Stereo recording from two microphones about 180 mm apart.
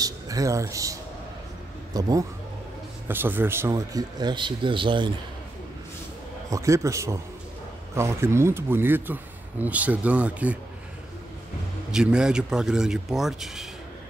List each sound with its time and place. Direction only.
0.0 s speech: 20° right (ahead or behind)
2.0 s speech: 20° right (ahead or behind)
6.5 s speech: 15° right (ahead or behind)
11.9 s speech: 5° right (ahead or behind)